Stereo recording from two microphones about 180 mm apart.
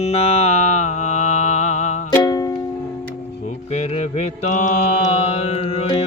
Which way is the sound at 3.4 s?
35° left (ahead or behind).